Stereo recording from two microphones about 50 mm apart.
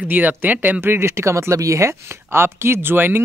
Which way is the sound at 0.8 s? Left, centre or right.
Right.